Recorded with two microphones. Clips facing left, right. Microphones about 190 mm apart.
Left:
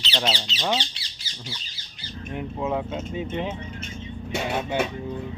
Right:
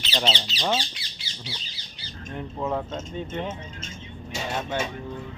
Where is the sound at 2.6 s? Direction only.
10° left (ahead or behind).